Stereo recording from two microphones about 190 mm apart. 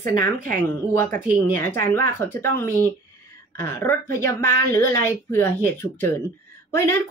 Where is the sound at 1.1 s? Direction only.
45° right (ahead or behind).